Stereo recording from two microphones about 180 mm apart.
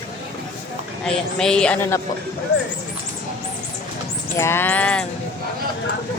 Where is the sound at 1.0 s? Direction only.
5° left (ahead or behind).